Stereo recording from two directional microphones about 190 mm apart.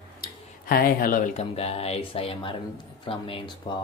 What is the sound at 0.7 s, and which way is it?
Speech, 50° left (ahead or behind).